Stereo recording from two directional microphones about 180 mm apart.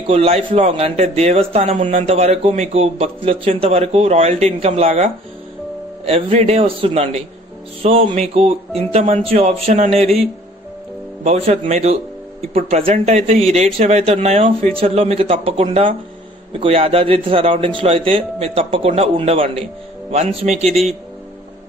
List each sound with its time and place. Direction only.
0.1 s a man's voice: 35° right (ahead or behind)
6.0 s a man's voice: 35° right (ahead or behind)
11.2 s a man's voice: 35° right (ahead or behind)